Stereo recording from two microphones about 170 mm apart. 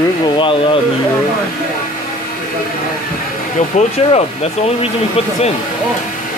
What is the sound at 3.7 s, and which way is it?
Speech, 45° left (ahead or behind).